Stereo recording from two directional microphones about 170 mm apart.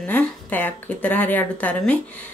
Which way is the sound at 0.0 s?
10° left (ahead or behind).